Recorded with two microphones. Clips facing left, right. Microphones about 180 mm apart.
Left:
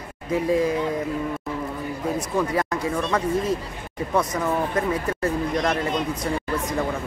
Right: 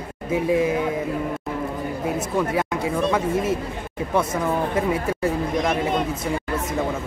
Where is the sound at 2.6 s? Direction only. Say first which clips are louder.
Right 2 dB; 5° right (ahead or behind).